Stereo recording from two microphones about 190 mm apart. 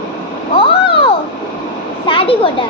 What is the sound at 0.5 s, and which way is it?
Vehicle, 30° left (ahead or behind).